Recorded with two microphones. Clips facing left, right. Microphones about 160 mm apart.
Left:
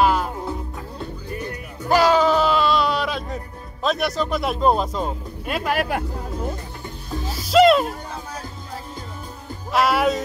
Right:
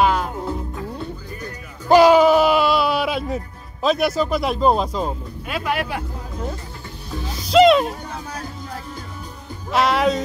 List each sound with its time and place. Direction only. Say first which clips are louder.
0.0 s music: even; centre (ahead or behind)
1.9 s a sound: right 5 dB; 15° right (ahead or behind)
3.8 s speech: right 3 dB; centre (ahead or behind)
5.5 s speech: left 1 dB; 45° left (ahead or behind)
7.4 s speech: right 1 dB; centre (ahead or behind)
9.7 s speech: right 1 dB; 5° left (ahead or behind)